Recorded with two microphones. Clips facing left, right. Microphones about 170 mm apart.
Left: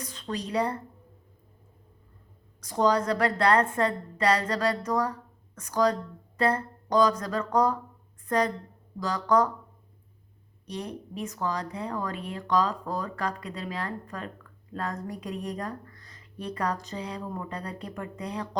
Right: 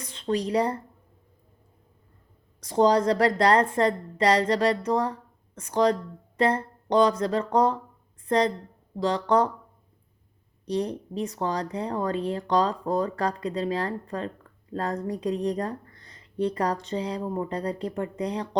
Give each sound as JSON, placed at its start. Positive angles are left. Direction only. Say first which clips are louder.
{"t": 0.0, "sound": "speech", "louder": "right 7 dB", "side_deg": -30}
{"t": 2.6, "sound": "speech", "louder": "right 4 dB", "side_deg": -30}
{"t": 10.7, "sound": "speech", "louder": "right 8 dB", "side_deg": -35}